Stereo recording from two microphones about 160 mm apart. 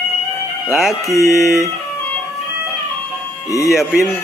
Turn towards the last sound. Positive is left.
turn(degrees=0)  # may be behind; listen again after turning